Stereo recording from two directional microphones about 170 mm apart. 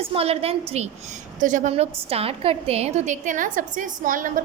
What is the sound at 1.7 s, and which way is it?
A woman's voice, 35° right (ahead or behind).